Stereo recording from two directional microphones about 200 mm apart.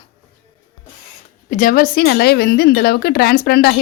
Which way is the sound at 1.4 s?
40° left (ahead or behind).